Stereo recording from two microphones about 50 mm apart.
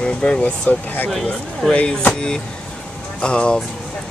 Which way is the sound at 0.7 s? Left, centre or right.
Left.